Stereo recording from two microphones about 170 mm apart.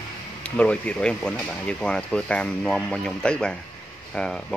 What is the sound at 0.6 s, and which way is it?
Speech, 5° left (ahead or behind).